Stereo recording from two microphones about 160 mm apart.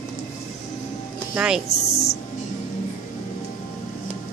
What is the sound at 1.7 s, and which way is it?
Music, 40° left (ahead or behind).